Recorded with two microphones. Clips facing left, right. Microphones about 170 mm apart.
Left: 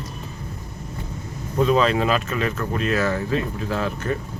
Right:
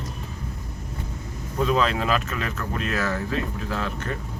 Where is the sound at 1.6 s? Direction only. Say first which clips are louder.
Left 4 dB; centre (ahead or behind).